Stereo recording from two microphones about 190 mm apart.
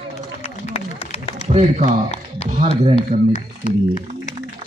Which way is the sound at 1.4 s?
35° right (ahead or behind).